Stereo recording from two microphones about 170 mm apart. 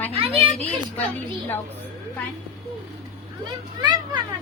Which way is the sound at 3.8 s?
25° right (ahead or behind).